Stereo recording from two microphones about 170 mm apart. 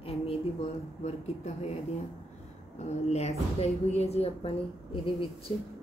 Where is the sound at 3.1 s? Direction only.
40° left (ahead or behind).